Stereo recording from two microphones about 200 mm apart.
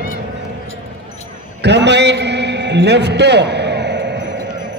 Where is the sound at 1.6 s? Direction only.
60° right (ahead or behind).